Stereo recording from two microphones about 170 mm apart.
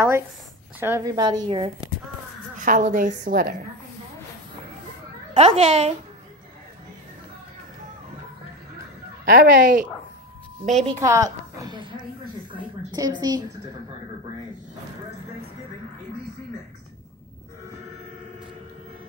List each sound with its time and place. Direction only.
0.7 s a woman's voice: 15° right (ahead or behind)
2.5 s a woman's voice: 50° right (ahead or behind)
5.3 s a woman's voice: 35° right (ahead or behind)
9.2 s speech: 60° right (ahead or behind)
10.6 s a woman's voice: 40° right (ahead or behind)
11.0 s a woman's voice: 20° right (ahead or behind)